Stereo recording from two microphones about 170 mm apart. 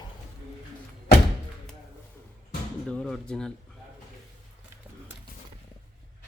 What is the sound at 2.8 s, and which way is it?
Speech, 5° left (ahead or behind).